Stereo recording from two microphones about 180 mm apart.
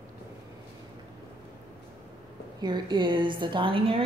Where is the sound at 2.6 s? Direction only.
25° right (ahead or behind).